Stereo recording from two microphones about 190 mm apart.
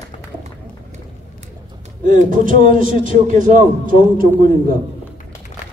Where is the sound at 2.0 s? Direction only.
45° right (ahead or behind).